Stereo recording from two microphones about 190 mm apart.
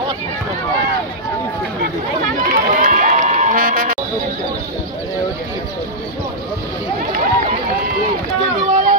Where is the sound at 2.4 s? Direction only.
45° right (ahead or behind).